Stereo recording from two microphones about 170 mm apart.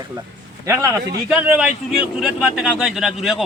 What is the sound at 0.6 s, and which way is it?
Speech, 15° right (ahead or behind).